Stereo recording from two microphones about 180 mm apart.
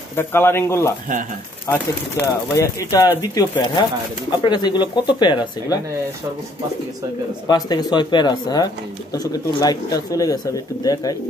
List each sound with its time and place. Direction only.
0.1 s speech: 15° left (ahead or behind)
7.4 s speech: 20° left (ahead or behind)